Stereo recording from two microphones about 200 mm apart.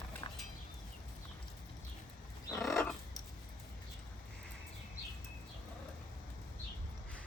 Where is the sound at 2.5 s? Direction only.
Centre (ahead or behind).